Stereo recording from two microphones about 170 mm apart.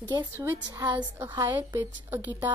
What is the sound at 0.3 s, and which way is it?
Speech, 15° right (ahead or behind).